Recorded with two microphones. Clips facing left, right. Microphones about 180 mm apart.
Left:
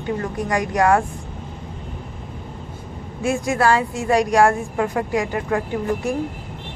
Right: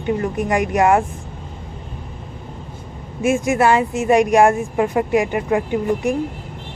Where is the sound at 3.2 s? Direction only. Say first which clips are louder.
Right 3 dB; 20° right (ahead or behind).